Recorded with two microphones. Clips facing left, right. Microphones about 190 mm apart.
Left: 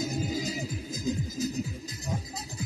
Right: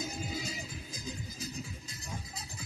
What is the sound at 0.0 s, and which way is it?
Music, 40° left (ahead or behind).